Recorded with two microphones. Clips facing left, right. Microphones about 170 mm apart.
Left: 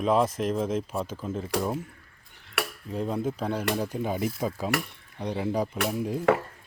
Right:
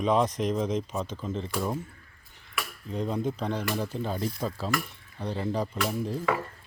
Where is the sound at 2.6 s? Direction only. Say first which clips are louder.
Left 5 dB; 75° left (ahead or behind).